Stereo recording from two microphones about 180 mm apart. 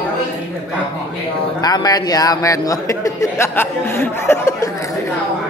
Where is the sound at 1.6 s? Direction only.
20° left (ahead or behind).